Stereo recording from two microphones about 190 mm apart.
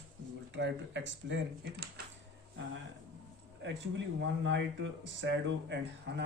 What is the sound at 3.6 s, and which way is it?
Speech, 70° right (ahead or behind).